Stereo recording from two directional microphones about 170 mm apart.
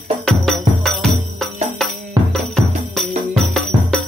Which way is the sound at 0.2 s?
Centre (ahead or behind).